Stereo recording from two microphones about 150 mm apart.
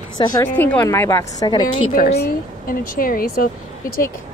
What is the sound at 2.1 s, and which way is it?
Speech, 70° left (ahead or behind).